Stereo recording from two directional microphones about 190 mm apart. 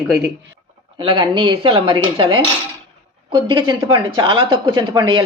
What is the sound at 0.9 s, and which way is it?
Speech, 25° right (ahead or behind).